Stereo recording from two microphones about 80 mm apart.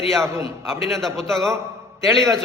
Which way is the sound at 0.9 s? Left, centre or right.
Centre.